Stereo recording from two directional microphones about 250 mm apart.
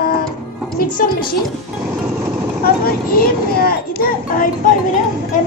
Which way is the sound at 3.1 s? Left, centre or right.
Left.